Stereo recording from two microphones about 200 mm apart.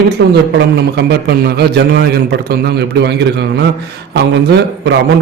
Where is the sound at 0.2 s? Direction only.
60° right (ahead or behind).